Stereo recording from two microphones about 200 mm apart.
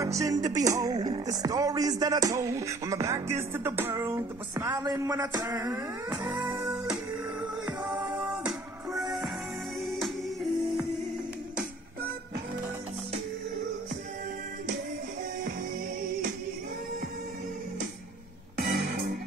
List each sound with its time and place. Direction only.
0.0 s music: 15° right (ahead or behind)
8.2 s music: 5° right (ahead or behind)
18.6 s music: 45° right (ahead or behind)